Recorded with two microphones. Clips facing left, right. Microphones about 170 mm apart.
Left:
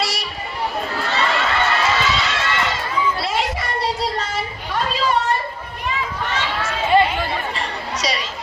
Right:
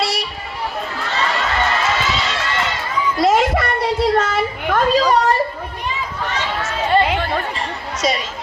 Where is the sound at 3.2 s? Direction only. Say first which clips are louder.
Right 8 dB; 45° right (ahead or behind).